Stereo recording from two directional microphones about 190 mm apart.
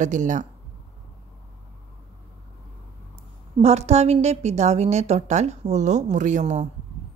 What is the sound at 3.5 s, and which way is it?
A woman's voice, 35° right (ahead or behind).